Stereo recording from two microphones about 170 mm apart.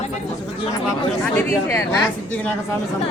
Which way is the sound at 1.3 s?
15° left (ahead or behind).